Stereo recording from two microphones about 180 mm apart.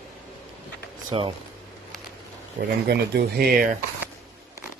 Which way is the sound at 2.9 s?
60° right (ahead or behind).